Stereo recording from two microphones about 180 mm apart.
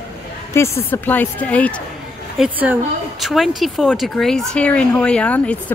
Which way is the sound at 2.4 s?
10° right (ahead or behind).